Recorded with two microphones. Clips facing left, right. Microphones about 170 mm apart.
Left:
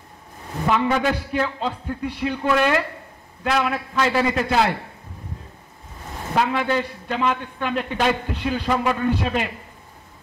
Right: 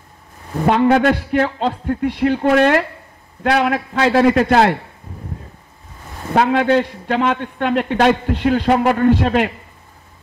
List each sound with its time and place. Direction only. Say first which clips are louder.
0.7 s a man's voice: right 7 dB; 60° right (ahead or behind)
2.4 s a man's voice: right 5 dB; 60° right (ahead or behind)
3.4 s a man's voice: right 6 dB; 70° right (ahead or behind)
6.3 s a man's voice: right 7 dB; 65° right (ahead or behind)